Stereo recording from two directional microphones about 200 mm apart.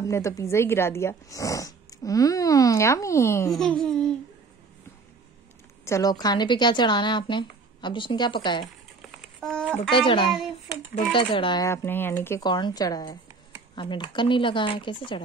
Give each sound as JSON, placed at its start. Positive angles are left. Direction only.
{"t": 0.0, "sound": "speech", "side_deg": 15}
{"t": 3.5, "sound": "speech", "side_deg": 5}
{"t": 5.9, "sound": "speech", "side_deg": 15}
{"t": 9.4, "sound": "a sound", "side_deg": 5}
{"t": 9.8, "sound": "speech", "side_deg": 25}